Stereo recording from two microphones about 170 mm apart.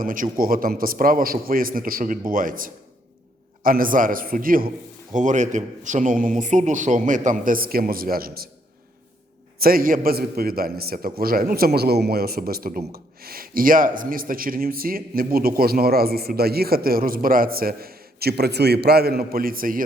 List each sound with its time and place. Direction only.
0.0 s a man's voice: 55° right (ahead or behind)
9.6 s speech: 60° right (ahead or behind)